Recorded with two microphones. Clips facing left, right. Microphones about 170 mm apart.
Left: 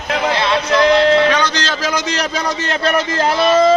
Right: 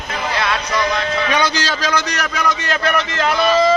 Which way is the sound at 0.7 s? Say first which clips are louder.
Left 8 dB; 75° left (ahead or behind).